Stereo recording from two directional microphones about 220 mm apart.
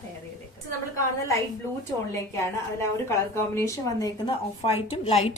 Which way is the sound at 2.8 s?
10° left (ahead or behind).